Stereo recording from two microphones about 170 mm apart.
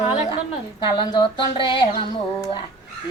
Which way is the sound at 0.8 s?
25° left (ahead or behind).